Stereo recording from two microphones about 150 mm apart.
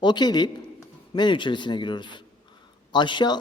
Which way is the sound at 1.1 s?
30° left (ahead or behind).